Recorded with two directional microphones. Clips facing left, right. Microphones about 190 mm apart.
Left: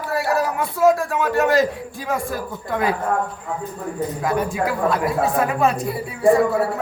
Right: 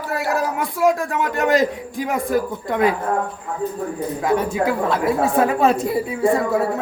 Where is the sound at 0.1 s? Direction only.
20° right (ahead or behind).